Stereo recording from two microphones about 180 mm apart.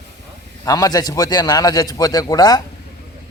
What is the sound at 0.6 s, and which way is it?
A man's voice, 20° left (ahead or behind).